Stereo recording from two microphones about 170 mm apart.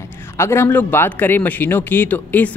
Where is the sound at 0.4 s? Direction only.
15° left (ahead or behind).